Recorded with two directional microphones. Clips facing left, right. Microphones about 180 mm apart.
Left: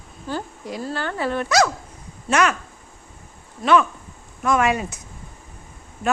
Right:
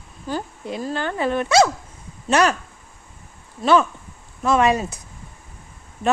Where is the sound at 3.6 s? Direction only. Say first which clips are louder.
Right 1 dB; 30° right (ahead or behind).